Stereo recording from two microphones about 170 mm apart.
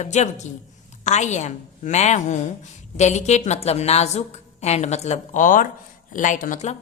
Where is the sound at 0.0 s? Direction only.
45° left (ahead or behind).